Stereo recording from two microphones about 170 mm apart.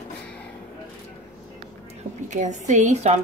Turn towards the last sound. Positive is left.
turn(degrees=-40)  # may be behind; listen again after turning